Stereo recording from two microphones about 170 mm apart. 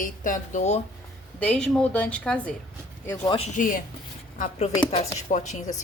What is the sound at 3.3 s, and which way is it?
Speech, 40° left (ahead or behind).